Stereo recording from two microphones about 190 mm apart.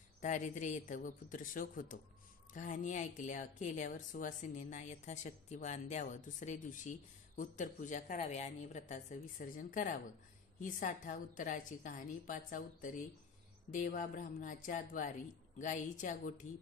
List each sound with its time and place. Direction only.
0.2 s a woman's voice: 40° left (ahead or behind)